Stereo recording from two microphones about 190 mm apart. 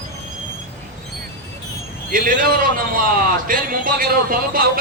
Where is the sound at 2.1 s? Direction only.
45° right (ahead or behind).